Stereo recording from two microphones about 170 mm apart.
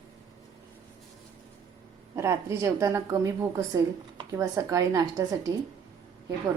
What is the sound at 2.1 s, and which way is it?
A woman's voice, 15° right (ahead or behind).